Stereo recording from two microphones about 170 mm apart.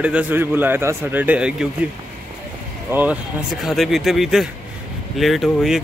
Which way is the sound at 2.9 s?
10° right (ahead or behind).